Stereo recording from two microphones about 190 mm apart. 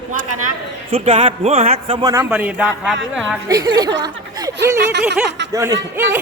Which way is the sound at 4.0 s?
20° right (ahead or behind).